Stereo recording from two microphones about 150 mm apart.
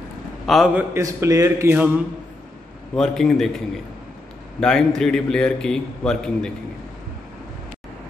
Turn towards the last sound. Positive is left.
turn(degrees=5)  # may be behind; listen again after turning